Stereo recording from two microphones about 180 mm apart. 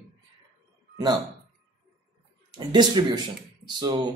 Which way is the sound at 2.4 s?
25° right (ahead or behind).